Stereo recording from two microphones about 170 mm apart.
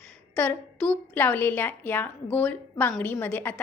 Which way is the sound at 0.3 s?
10° left (ahead or behind).